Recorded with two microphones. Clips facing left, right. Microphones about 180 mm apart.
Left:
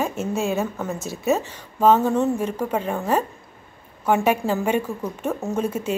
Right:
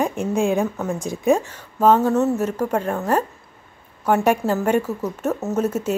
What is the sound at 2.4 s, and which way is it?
Speech, 10° left (ahead or behind).